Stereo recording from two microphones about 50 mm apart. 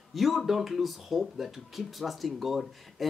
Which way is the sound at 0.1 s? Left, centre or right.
Centre.